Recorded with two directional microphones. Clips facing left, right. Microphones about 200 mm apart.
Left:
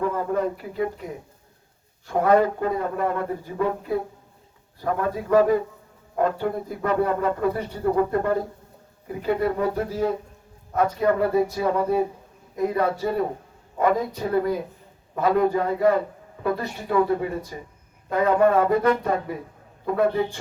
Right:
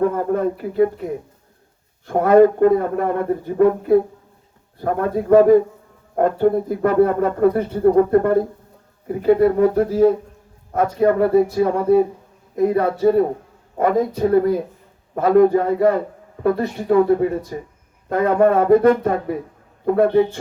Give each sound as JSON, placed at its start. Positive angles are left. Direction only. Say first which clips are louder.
{"t": 0.0, "sound": "speech", "louder": "right 5 dB", "side_deg": -50}